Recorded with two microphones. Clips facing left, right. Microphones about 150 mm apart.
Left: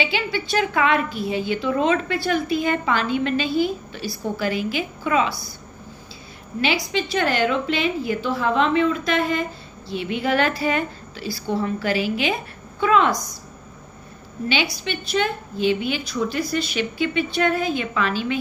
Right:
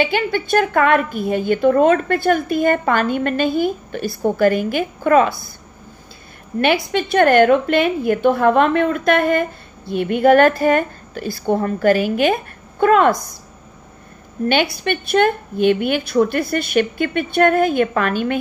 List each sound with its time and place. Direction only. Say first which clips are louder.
0.0 s a woman's voice: right 6 dB; 50° right (ahead or behind)
6.6 s a woman's voice: right 6 dB; 55° right (ahead or behind)
14.5 s a woman's voice: right 6 dB; 55° right (ahead or behind)